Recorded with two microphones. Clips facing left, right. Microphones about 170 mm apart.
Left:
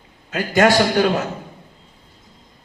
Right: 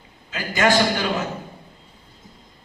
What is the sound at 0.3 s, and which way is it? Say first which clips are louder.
Speech: left 5 dB; 60° left (ahead or behind).